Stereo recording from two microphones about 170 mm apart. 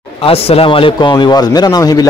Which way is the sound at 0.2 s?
35° left (ahead or behind).